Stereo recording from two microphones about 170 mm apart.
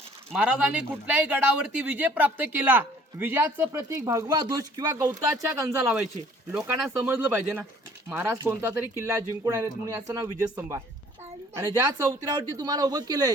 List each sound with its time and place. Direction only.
0.3 s speech: 5° right (ahead or behind); by 13.3 s 20° right (ahead or behind)